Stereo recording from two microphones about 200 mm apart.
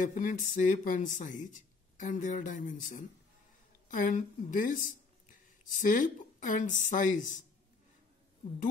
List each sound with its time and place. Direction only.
0.1 s speech: 40° left (ahead or behind)